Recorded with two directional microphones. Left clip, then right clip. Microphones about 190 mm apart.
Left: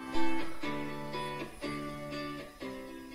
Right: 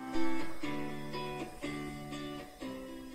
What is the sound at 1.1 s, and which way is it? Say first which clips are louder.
Music: left 2 dB; centre (ahead or behind).